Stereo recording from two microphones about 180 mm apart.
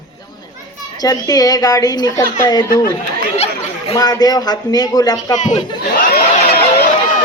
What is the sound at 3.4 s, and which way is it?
Speech, 35° left (ahead or behind).